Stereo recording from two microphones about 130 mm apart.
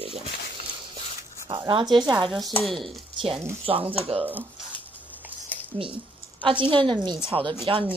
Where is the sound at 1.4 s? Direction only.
40° right (ahead or behind).